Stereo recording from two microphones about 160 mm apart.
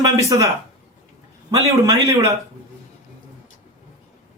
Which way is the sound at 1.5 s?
20° right (ahead or behind).